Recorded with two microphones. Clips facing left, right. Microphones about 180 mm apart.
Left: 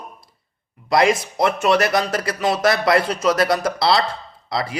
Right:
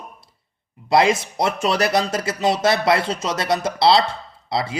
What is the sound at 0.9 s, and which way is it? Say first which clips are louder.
A man's voice: even; 25° right (ahead or behind).